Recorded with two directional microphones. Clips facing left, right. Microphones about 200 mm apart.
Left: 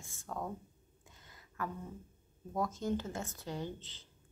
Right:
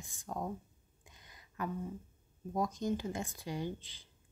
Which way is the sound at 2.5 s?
15° right (ahead or behind).